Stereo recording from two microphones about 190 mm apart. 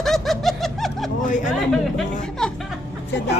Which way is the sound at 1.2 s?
40° left (ahead or behind).